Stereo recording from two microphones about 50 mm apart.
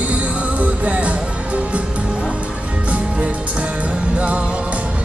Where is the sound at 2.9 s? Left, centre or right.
Right.